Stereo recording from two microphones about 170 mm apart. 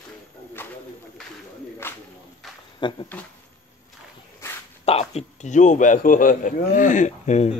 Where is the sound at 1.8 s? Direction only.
10° left (ahead or behind).